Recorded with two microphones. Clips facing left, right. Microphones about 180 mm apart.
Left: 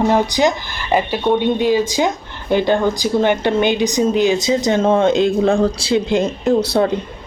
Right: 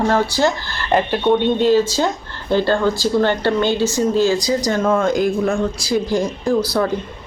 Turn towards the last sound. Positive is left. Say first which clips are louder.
# left 3 dB
turn(degrees=25)  # may be behind; listen again after turning